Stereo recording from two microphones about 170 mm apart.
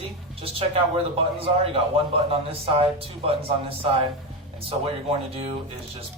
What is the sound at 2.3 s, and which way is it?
Speech, 35° right (ahead or behind).